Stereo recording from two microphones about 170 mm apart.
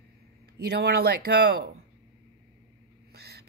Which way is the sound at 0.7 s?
70° right (ahead or behind).